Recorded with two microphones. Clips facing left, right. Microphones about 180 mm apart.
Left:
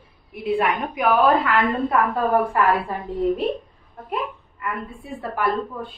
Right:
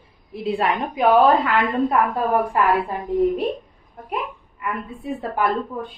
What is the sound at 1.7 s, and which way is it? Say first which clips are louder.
A woman's voice: right 1 dB; 10° right (ahead or behind).